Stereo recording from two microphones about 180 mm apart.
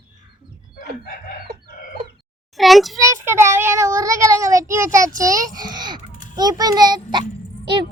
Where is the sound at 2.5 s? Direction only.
Centre (ahead or behind).